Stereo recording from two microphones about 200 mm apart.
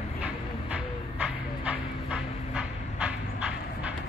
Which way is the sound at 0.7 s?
5° right (ahead or behind).